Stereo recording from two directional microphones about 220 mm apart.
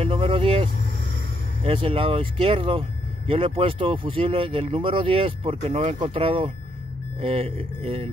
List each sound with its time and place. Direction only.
0.0 s vehicle: 25° right (ahead or behind)
1.6 s speech: 25° right (ahead or behind)